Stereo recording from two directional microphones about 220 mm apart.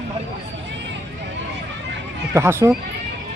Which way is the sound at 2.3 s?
10° right (ahead or behind).